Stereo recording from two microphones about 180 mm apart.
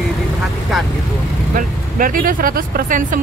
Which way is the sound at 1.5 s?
50° right (ahead or behind).